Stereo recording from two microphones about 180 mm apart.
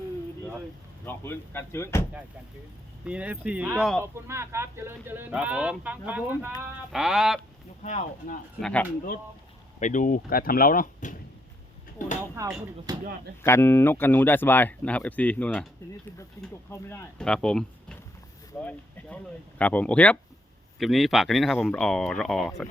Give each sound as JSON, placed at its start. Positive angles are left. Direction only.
{"t": 1.0, "sound": "speech", "side_deg": 10}
{"t": 3.0, "sound": "speech", "side_deg": -5}
{"t": 7.8, "sound": "speech", "side_deg": 45}
{"t": 8.6, "sound": "speech", "side_deg": 10}
{"t": 9.8, "sound": "speech", "side_deg": 45}
{"t": 12.4, "sound": "speech", "side_deg": -20}
{"t": 13.4, "sound": "speech", "side_deg": 15}
{"t": 16.6, "sound": "speech", "side_deg": 15}